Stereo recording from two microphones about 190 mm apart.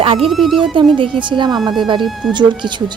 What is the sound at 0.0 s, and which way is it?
Speech, 30° right (ahead or behind).